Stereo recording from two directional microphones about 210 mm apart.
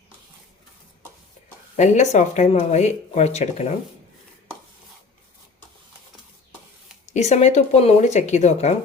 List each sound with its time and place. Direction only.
1.7 s speech: 35° left (ahead or behind)
7.0 s speech: 35° left (ahead or behind)